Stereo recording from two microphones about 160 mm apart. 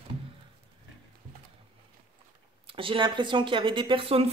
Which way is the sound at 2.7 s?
35° right (ahead or behind).